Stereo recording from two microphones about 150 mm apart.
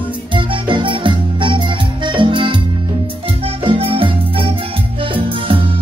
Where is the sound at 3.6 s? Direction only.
35° right (ahead or behind).